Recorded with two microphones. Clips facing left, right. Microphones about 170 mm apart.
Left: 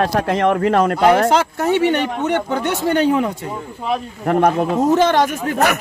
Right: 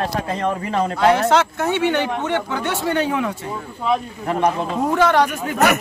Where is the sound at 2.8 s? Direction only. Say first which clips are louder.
Left 5 dB; 35° left (ahead or behind).